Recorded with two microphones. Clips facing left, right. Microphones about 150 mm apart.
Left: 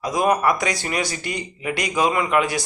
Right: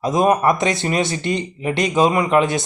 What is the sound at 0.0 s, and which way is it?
Speech, 25° right (ahead or behind).